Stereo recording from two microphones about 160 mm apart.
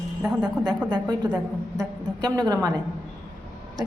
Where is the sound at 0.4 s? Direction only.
25° right (ahead or behind).